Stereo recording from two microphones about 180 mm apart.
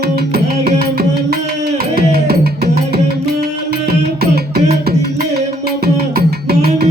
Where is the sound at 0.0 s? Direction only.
60° right (ahead or behind).